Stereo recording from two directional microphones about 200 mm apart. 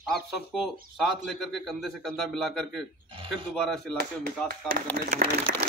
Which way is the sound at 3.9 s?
50° right (ahead or behind).